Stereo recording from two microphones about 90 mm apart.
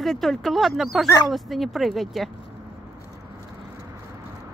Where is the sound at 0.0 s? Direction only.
5° left (ahead or behind).